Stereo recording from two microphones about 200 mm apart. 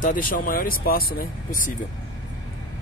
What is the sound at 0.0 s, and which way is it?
Speech, 40° left (ahead or behind).